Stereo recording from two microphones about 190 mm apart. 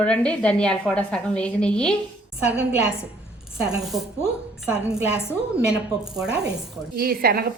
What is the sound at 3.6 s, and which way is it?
Speech, 5° right (ahead or behind).